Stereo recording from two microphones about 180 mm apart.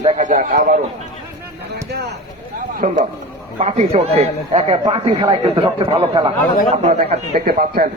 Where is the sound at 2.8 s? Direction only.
45° right (ahead or behind); by 6.3 s 25° right (ahead or behind).